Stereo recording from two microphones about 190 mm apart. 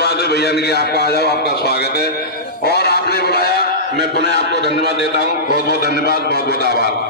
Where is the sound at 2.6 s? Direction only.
55° left (ahead or behind).